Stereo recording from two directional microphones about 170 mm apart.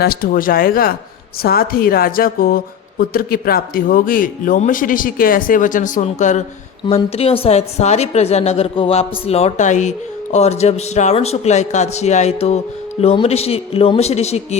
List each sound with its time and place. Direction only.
0.0 s a woman's voice: 60° left (ahead or behind); by 14.4 s 40° left (ahead or behind)